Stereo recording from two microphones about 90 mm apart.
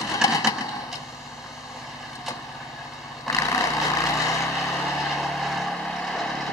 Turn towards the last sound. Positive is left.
turn(degrees=5)  # may be behind; listen again after turning